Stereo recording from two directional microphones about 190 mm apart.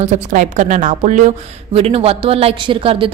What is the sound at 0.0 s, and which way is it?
A woman's voice, 40° right (ahead or behind).